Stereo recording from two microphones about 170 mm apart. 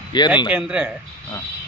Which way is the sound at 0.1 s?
25° left (ahead or behind).